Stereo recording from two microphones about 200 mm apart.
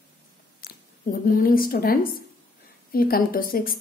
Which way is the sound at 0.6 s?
50° left (ahead or behind).